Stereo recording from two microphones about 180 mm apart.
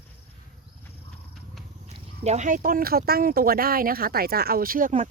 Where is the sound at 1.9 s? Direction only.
40° right (ahead or behind).